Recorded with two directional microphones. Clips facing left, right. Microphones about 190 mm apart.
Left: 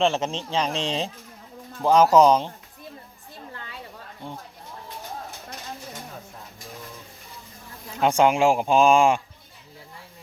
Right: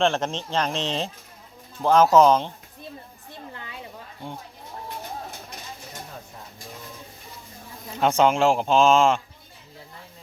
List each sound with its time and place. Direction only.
0.0 s speech: centre (ahead or behind)
3.5 s a sound: 20° right (ahead or behind)
8.0 s speech: 10° left (ahead or behind)